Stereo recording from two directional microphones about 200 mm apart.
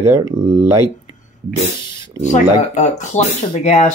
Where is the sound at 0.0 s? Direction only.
15° right (ahead or behind).